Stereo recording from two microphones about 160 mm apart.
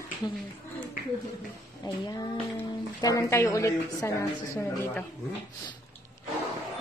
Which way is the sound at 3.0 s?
20° left (ahead or behind).